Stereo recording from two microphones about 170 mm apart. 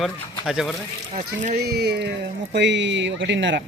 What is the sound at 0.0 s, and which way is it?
Speech, centre (ahead or behind).